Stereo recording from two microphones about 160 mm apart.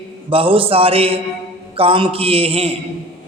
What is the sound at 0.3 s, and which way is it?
A man's voice, 35° right (ahead or behind).